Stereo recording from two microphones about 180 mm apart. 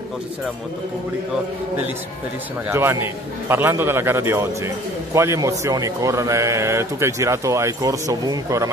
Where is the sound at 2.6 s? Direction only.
15° right (ahead or behind).